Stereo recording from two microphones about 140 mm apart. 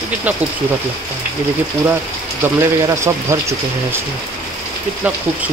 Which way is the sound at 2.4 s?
20° right (ahead or behind).